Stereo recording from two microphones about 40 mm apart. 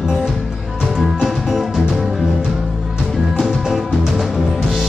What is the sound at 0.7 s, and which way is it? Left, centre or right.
Music, right.